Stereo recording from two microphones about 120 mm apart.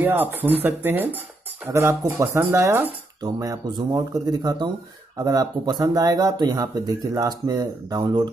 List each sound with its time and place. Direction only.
0.0 s speech: 15° right (ahead or behind); by 8.3 s 35° right (ahead or behind)